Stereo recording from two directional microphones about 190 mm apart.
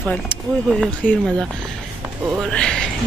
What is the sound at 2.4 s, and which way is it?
Music, 5° left (ahead or behind).